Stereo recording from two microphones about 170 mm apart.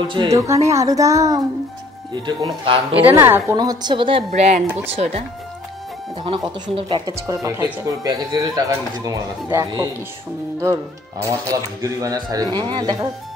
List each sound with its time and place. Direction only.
0.1 s speech: 25° right (ahead or behind)
3.2 s speech: 15° right (ahead or behind)
4.3 s speech: 45° right (ahead or behind)
6.7 s speech: 30° right (ahead or behind)
7.2 s speech: 20° right (ahead or behind)